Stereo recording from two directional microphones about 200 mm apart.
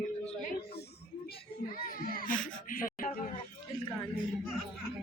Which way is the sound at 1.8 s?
45° left (ahead or behind).